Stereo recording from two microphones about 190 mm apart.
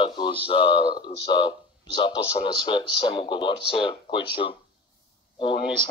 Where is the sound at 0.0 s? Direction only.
25° left (ahead or behind).